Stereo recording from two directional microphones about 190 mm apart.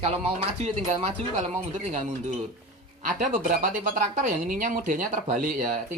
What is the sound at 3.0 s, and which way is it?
A woman's voice, 40° right (ahead or behind).